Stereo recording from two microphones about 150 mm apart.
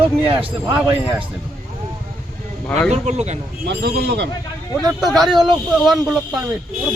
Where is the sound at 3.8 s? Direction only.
90° right.